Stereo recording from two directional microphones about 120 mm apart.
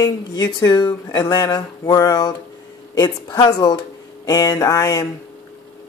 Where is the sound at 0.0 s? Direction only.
35° left (ahead or behind).